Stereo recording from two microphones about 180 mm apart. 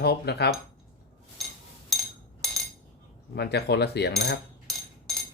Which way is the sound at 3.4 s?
65° left (ahead or behind).